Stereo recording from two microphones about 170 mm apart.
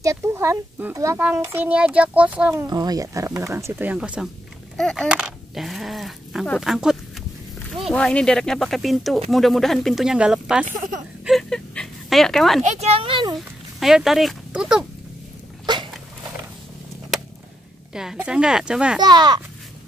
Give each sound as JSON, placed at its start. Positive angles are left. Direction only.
{"t": 0.0, "sound": "a child's voice", "side_deg": -15}
{"t": 2.6, "sound": "a child's voice", "side_deg": -25}
{"t": 12.6, "sound": "speech", "side_deg": -40}
{"t": 13.7, "sound": "speech", "side_deg": 0}
{"t": 15.6, "sound": "a sound", "side_deg": -25}
{"t": 17.9, "sound": "speech", "side_deg": -5}
{"t": 18.9, "sound": "speech", "side_deg": -25}